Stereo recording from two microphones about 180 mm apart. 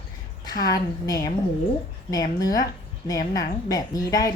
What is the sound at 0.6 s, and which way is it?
A woman's voice, 20° left (ahead or behind).